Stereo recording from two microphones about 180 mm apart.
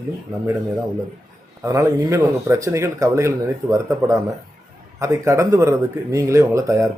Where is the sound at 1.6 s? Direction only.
15° right (ahead or behind).